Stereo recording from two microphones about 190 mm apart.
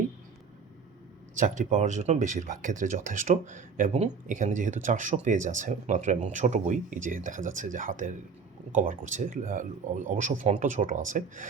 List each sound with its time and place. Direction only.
1.4 s speech: 40° right (ahead or behind)